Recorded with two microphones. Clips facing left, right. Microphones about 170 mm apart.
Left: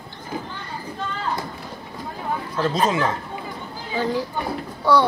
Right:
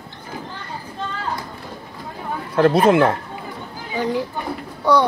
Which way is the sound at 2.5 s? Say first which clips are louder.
Right 8 dB; 60° right (ahead or behind).